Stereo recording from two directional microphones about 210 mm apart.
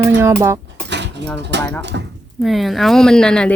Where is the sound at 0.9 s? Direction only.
55° right (ahead or behind).